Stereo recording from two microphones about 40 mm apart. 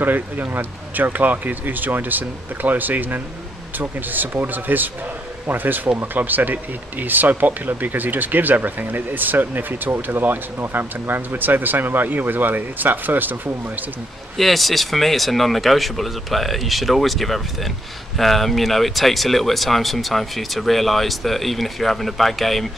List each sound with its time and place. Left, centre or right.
0.0 s speech: right
14.3 s speech: centre